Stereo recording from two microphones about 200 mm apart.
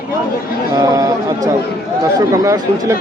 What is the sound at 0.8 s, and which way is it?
Speech, 15° right (ahead or behind).